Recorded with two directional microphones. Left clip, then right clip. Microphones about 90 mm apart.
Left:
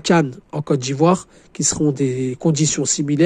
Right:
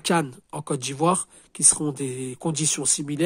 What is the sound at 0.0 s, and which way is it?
A man's voice, 35° left (ahead or behind).